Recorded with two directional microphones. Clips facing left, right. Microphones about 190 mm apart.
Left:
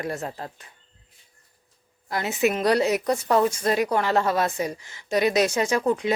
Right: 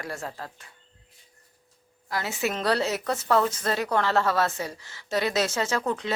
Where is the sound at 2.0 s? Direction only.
20° left (ahead or behind).